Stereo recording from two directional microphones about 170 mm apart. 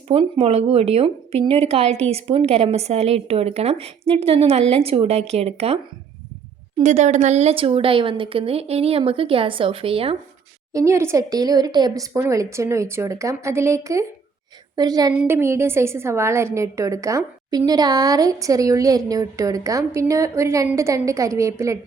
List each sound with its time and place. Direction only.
0.1 s a woman's voice: 35° right (ahead or behind)
6.8 s a woman's voice: 45° right (ahead or behind)
10.7 s a woman's voice: 20° right (ahead or behind)